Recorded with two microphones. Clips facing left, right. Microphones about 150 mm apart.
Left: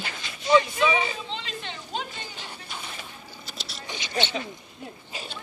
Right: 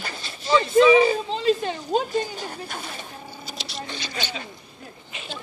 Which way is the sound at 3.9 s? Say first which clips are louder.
Left 6 dB; 20° left (ahead or behind).